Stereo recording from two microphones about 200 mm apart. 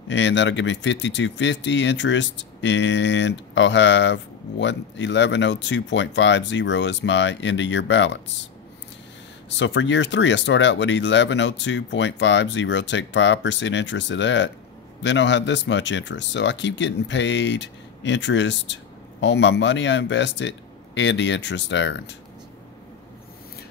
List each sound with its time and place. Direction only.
0.1 s speech: 65° left (ahead or behind)
9.6 s speech: 65° left (ahead or behind)